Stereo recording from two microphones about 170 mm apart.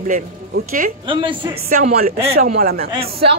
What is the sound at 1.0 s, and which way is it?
Speech, 30° right (ahead or behind).